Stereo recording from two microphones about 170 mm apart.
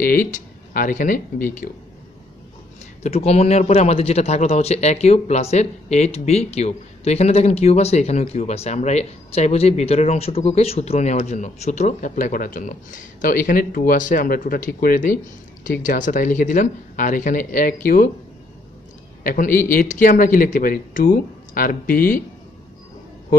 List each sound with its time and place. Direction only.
0.0 s speech: 50° left (ahead or behind)
3.0 s a man's voice: 40° left (ahead or behind); by 18.1 s 55° left (ahead or behind)
19.2 s speech: 55° left (ahead or behind)